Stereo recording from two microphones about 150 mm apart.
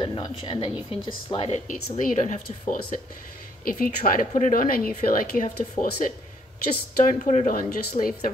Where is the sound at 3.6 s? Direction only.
70° left (ahead or behind).